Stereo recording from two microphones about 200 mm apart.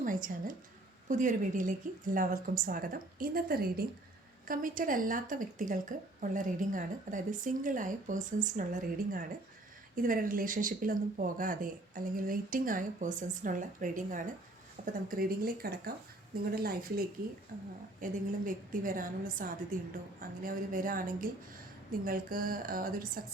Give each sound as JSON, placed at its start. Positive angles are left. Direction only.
{"t": 0.0, "sound": "speech", "side_deg": -40}